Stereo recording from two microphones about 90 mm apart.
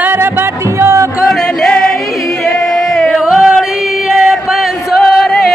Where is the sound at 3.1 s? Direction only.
5° right (ahead or behind).